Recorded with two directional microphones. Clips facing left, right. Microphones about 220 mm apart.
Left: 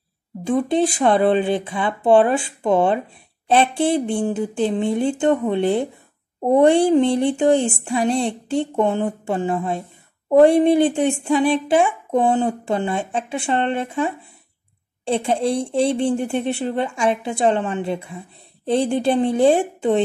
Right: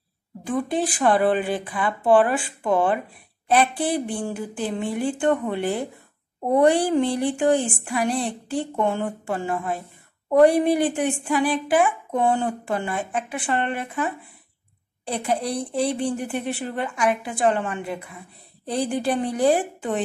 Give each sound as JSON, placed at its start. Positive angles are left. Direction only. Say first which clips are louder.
{"t": 0.4, "sound": "speech", "louder": "left 6 dB", "side_deg": 25}